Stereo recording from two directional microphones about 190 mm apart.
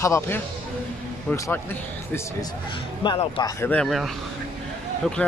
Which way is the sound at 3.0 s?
25° left (ahead or behind).